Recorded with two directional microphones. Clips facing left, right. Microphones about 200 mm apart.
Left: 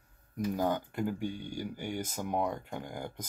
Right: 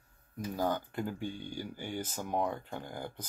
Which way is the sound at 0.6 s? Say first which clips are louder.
Even; 20° left (ahead or behind).